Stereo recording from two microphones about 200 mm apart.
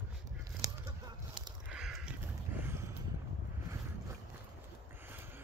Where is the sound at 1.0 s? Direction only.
20° right (ahead or behind).